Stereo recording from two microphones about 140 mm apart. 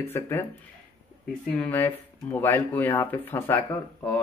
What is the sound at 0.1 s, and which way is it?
Speech, 15° left (ahead or behind).